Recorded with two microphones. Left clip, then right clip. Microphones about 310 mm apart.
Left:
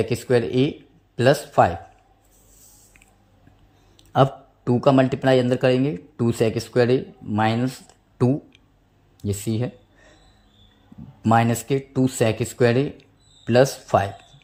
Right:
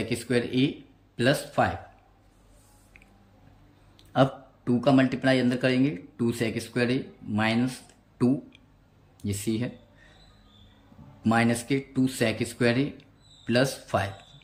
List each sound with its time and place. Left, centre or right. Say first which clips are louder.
0.0 s speech: left 7 dB; centre
4.1 s speech: left 5 dB; centre
9.2 s speech: left 4 dB; centre
11.2 s speech: left 6 dB; centre